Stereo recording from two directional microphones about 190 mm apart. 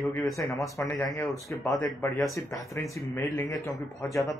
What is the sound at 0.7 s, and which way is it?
Speech, 15° left (ahead or behind).